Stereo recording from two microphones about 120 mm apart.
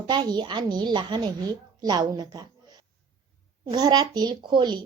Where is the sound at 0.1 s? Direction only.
35° right (ahead or behind).